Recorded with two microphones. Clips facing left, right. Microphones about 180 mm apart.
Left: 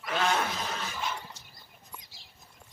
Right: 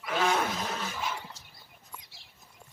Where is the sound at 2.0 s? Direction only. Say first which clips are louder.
Left 1 dB; 65° right (ahead or behind).